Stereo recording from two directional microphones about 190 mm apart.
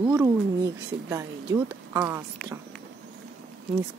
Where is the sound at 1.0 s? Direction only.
15° right (ahead or behind).